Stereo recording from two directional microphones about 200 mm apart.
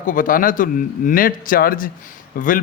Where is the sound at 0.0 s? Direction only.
40° left (ahead or behind).